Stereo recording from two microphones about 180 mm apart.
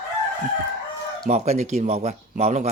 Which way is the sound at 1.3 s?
40° right (ahead or behind).